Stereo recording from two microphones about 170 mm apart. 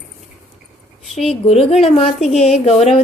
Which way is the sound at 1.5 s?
35° left (ahead or behind).